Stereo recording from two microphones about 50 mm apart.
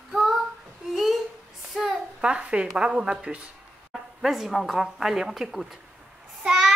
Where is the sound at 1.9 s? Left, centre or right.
Centre.